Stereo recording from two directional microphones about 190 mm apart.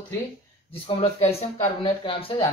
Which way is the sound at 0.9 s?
30° left (ahead or behind).